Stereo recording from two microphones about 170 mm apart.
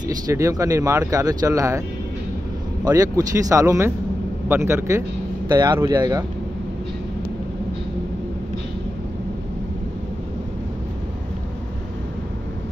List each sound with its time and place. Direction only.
0.3 s speech: 20° right (ahead or behind)
2.8 s speech: 20° right (ahead or behind)